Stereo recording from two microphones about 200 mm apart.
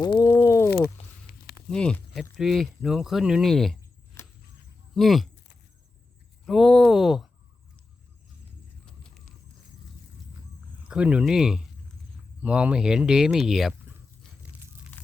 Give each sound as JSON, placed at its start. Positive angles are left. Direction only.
{"t": 0.0, "sound": "a sound", "side_deg": 20}
{"t": 1.0, "sound": "a sound", "side_deg": 30}
{"t": 1.7, "sound": "speech", "side_deg": 5}
{"t": 4.2, "sound": "a sound", "side_deg": 15}
{"t": 4.9, "sound": "speech", "side_deg": 0}
{"t": 6.4, "sound": "speech", "side_deg": 0}
{"t": 8.9, "sound": "horse", "side_deg": 5}
{"t": 10.8, "sound": "speech", "side_deg": -5}
{"t": 14.9, "sound": "crumpling", "side_deg": 10}